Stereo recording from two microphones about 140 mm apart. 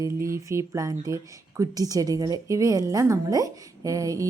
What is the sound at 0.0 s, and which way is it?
Speech, 20° right (ahead or behind).